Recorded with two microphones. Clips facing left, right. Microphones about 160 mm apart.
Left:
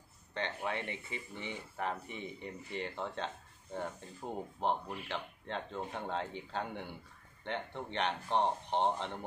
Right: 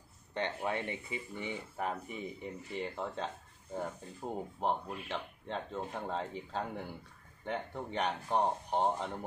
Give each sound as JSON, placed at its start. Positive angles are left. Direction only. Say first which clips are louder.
{"t": 0.3, "sound": "speech", "louder": "right 2 dB", "side_deg": -15}